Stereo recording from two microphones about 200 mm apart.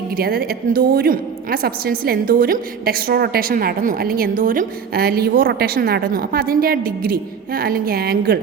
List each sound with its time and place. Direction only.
0.2 s a woman's voice: 50° right (ahead or behind)